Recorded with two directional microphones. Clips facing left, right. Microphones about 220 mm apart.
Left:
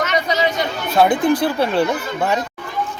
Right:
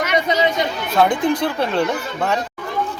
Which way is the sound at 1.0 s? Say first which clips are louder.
Left 3 dB; 30° left (ahead or behind).